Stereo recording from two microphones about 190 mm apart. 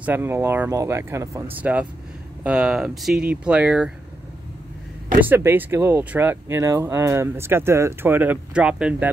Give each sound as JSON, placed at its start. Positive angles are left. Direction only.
{"t": 0.0, "sound": "speech", "side_deg": -10}
{"t": 5.2, "sound": "speech", "side_deg": -10}